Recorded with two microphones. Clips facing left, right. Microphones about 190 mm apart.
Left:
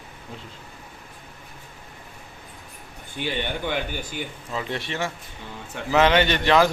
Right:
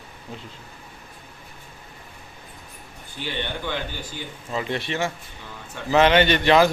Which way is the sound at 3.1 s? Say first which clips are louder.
Left 2 dB; 15° left (ahead or behind).